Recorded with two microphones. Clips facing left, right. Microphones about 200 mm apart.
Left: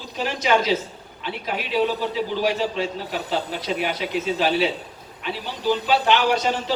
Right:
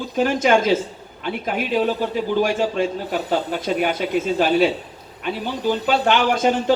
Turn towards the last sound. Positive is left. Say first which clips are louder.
# right 2 dB
turn(degrees=-50)  # may be behind; listen again after turning